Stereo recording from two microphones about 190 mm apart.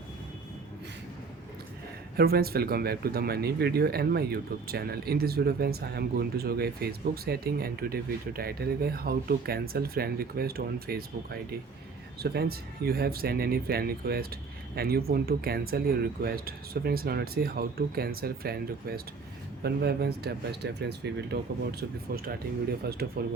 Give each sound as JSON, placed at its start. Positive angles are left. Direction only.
{"t": 2.1, "sound": "speech", "side_deg": -55}